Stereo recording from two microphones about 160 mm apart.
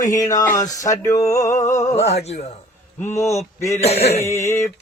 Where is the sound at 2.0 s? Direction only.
40° left (ahead or behind).